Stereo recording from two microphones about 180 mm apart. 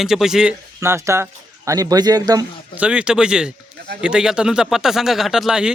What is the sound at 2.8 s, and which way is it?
Speech, 5° right (ahead or behind).